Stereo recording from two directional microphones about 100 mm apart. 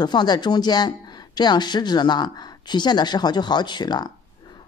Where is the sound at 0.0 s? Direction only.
45° left (ahead or behind).